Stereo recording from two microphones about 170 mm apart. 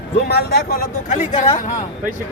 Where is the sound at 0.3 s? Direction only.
70° left (ahead or behind).